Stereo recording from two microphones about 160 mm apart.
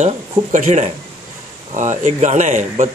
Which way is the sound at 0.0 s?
50° right (ahead or behind).